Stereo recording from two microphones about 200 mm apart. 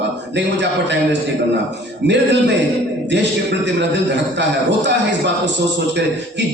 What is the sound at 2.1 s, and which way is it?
Speech, 60° right (ahead or behind).